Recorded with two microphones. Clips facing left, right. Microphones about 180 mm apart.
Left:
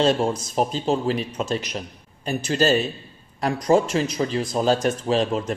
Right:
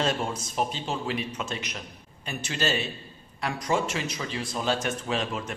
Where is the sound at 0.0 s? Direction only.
35° left (ahead or behind).